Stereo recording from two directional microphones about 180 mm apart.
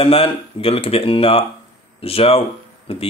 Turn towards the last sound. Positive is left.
turn(degrees=35)  # may be behind; listen again after turning